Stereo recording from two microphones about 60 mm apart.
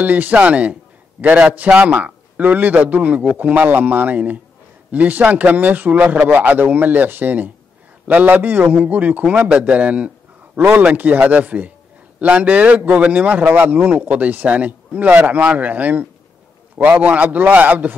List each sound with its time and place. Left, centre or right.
0.0 s a man's voice: right